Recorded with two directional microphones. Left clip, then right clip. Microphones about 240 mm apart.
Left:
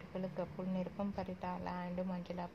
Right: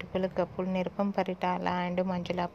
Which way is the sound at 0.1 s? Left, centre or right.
Right.